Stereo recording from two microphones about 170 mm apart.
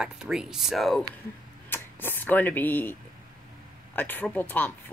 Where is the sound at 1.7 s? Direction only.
15° left (ahead or behind).